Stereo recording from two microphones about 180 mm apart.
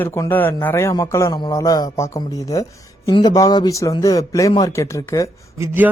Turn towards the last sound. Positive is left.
turn(degrees=-15)  # may be behind; listen again after turning